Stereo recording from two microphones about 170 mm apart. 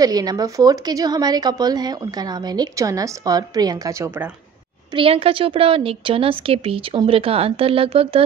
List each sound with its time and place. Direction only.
0.0 s a woman's voice: 20° right (ahead or behind)
4.9 s a woman's voice: 35° right (ahead or behind)